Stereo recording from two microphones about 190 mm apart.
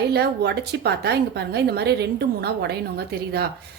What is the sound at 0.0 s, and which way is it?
A woman's voice, 60° right (ahead or behind).